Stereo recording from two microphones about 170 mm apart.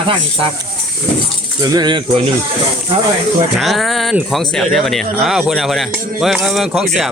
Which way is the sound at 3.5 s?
Centre (ahead or behind).